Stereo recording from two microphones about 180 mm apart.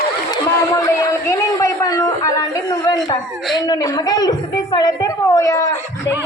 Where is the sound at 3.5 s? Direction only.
20° left (ahead or behind).